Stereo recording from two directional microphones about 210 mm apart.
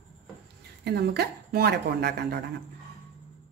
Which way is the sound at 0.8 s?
50° right (ahead or behind).